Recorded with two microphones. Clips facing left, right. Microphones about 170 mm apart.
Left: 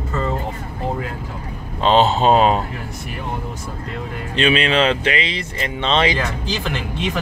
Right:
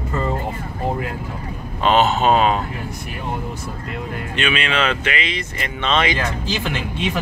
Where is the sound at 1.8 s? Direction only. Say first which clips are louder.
Left 1 dB; 30° left (ahead or behind).